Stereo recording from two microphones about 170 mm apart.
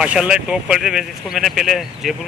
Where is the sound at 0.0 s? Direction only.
5° right (ahead or behind).